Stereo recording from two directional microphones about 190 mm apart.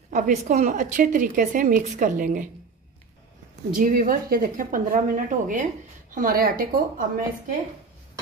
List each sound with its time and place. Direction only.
0.1 s a woman's voice: 45° right (ahead or behind)
3.7 s a woman's voice: 45° right (ahead or behind)